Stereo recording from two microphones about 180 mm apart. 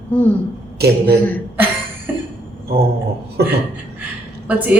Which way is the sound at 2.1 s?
10° right (ahead or behind).